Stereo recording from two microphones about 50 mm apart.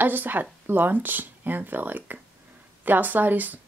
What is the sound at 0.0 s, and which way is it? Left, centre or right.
Speech, right.